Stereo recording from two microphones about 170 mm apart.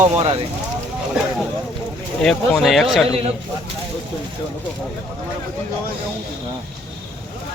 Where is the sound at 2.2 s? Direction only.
Centre (ahead or behind).